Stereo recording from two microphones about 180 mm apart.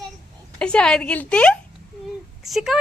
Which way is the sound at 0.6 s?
5° left (ahead or behind).